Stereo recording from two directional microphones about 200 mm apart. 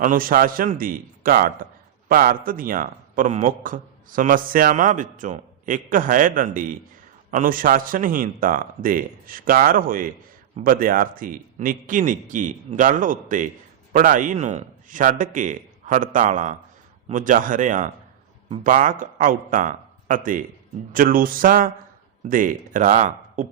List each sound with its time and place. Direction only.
0.0 s a man's voice: 45° right (ahead or behind)